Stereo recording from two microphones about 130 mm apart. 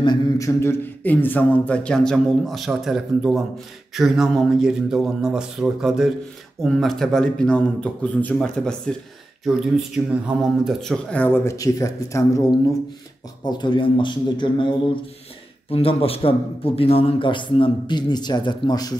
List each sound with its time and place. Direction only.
0.0 s a man's voice: 35° left (ahead or behind)
0.5 s speech: 20° left (ahead or behind)
13.4 s a man's voice: 35° left (ahead or behind)
15.7 s a man's voice: 45° left (ahead or behind); by 18.9 s 30° left (ahead or behind)